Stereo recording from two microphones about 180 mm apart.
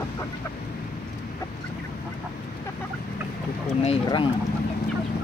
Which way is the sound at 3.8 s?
30° left (ahead or behind).